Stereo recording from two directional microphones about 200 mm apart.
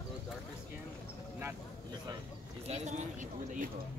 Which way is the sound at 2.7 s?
35° right (ahead or behind).